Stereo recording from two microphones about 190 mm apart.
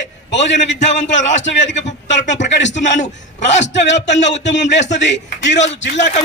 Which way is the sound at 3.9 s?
70° left (ahead or behind).